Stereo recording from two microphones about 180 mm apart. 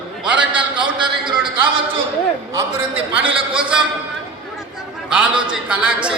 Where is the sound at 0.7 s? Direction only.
25° right (ahead or behind).